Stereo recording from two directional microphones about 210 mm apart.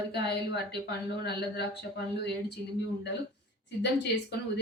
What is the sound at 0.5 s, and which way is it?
Speech, 50° left (ahead or behind).